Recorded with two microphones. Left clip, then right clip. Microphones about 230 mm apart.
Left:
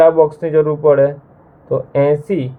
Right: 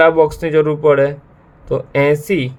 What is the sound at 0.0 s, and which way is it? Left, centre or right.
Speech, right.